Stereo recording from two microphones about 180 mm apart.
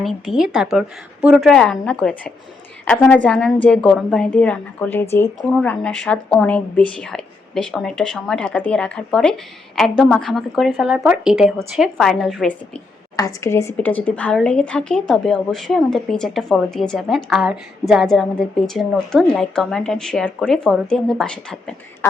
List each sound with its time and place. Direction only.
0.0 s a woman's voice: centre (ahead or behind)